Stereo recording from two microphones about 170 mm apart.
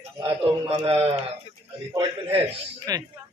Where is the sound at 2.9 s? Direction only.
20° right (ahead or behind).